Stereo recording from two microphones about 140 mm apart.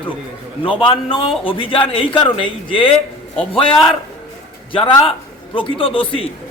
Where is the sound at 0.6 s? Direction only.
40° left (ahead or behind).